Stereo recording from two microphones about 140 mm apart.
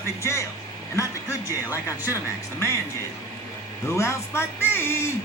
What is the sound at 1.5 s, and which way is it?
Speech, 20° left (ahead or behind).